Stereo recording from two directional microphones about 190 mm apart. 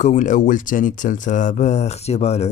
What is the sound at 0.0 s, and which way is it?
Speech, 40° left (ahead or behind).